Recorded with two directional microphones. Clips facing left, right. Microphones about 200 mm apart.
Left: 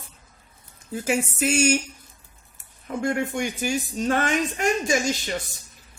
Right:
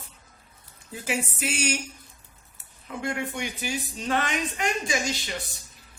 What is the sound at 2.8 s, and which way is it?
Speech, 45° left (ahead or behind).